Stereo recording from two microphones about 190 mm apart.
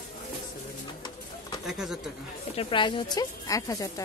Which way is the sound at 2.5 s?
25° left (ahead or behind).